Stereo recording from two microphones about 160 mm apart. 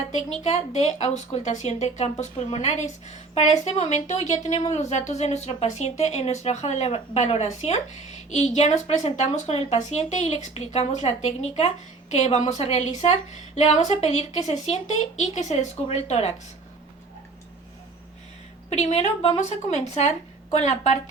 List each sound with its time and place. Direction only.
0.4 s speech: 45° left (ahead or behind)
18.7 s speech: 45° left (ahead or behind)